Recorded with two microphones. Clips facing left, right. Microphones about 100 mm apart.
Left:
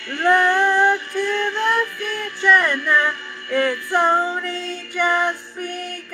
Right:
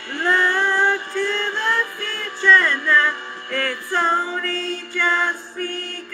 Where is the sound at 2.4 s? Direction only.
15° left (ahead or behind).